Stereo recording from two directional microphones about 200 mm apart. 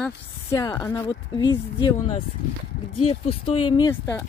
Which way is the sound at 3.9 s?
10° left (ahead or behind).